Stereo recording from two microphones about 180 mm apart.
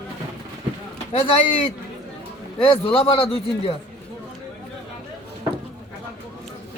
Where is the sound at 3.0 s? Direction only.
30° left (ahead or behind).